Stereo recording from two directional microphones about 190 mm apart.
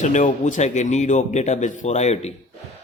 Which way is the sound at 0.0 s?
40° left (ahead or behind).